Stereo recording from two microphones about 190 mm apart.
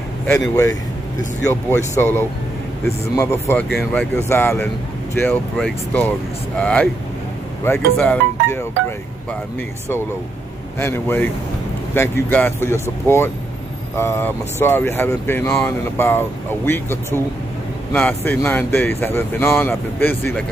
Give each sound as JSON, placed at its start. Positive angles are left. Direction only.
{"t": 0.3, "sound": "speech", "side_deg": 15}
{"t": 2.0, "sound": "speech", "side_deg": 10}
{"t": 10.8, "sound": "speech", "side_deg": 10}